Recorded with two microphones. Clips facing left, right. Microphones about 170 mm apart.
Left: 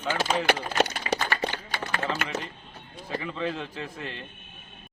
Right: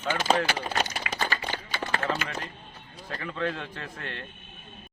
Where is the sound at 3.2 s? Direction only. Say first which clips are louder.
Left 1 dB; 5° left (ahead or behind).